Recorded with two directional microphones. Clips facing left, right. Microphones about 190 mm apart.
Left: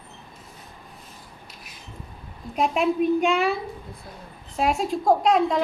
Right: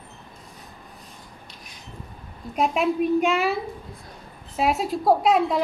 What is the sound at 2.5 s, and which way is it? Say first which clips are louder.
A woman's voice: even; centre (ahead or behind).